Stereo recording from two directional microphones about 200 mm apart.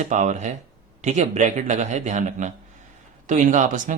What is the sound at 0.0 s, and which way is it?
Speech, 35° right (ahead or behind).